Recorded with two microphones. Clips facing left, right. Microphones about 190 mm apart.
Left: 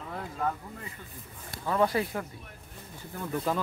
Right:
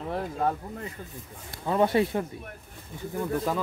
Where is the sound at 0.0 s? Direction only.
35° right (ahead or behind).